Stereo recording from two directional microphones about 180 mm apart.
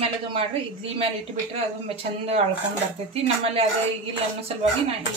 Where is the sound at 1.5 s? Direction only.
35° right (ahead or behind).